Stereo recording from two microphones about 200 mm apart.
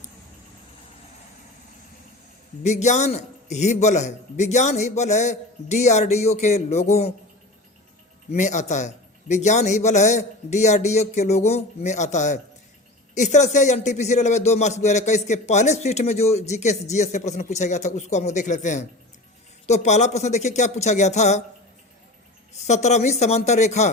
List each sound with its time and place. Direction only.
2.6 s a man's voice: 35° left (ahead or behind)
8.3 s a man's voice: 35° left (ahead or behind)
22.5 s a man's voice: 35° left (ahead or behind)